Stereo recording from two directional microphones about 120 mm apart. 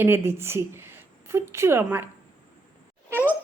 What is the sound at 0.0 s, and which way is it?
A woman's voice, 20° right (ahead or behind).